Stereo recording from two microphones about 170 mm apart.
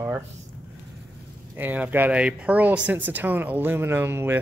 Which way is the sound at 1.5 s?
10° right (ahead or behind).